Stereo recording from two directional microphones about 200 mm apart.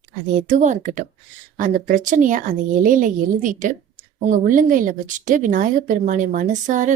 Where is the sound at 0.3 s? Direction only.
40° right (ahead or behind).